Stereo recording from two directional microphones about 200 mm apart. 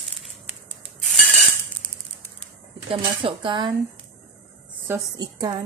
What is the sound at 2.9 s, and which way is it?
Speech, 25° right (ahead or behind).